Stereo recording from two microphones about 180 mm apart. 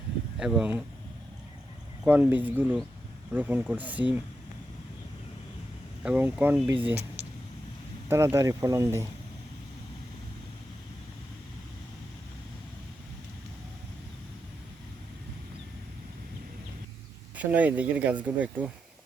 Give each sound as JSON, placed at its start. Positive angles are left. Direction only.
{"t": 0.3, "sound": "speech", "side_deg": -5}
{"t": 2.0, "sound": "speech", "side_deg": -10}
{"t": 6.0, "sound": "speech", "side_deg": -5}
{"t": 8.0, "sound": "speech", "side_deg": -15}
{"t": 17.3, "sound": "speech", "side_deg": -10}